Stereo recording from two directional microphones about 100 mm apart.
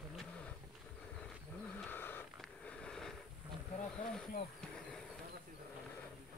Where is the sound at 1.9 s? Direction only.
20° left (ahead or behind).